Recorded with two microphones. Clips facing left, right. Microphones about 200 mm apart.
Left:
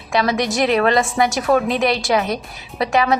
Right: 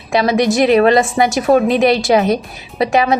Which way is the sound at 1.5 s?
30° right (ahead or behind).